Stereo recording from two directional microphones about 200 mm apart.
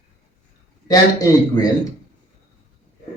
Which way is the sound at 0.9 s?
15° left (ahead or behind).